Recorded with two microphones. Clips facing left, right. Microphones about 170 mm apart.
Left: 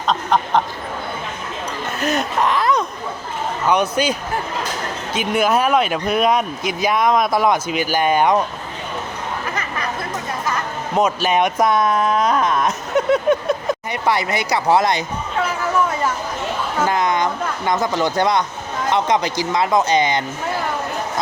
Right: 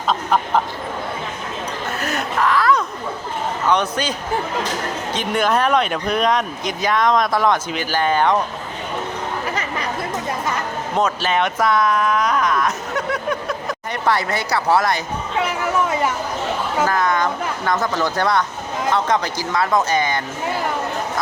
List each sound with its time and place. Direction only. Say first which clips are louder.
0.1 s speech: left 1 dB; 5° right (ahead or behind)
2.0 s speech: left 3 dB; 20° left (ahead or behind)
5.1 s speech: left 2 dB; 5° left (ahead or behind)
10.9 s speech: left 3 dB; 10° left (ahead or behind)
13.9 s speech: right 2 dB; 10° left (ahead or behind)
16.9 s a sound: left 1 dB; 20° left (ahead or behind)
17.7 s speech: left 2 dB; 15° left (ahead or behind)